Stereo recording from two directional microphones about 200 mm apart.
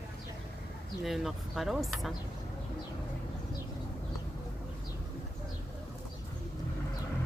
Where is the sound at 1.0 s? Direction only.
Centre (ahead or behind).